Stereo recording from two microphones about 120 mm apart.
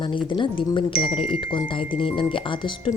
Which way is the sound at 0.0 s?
45° left (ahead or behind).